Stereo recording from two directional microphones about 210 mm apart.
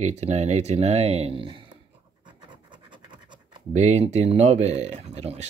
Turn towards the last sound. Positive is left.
turn(degrees=-30)  # may be behind; listen again after turning